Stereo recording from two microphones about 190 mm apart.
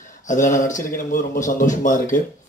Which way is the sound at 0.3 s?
40° left (ahead or behind).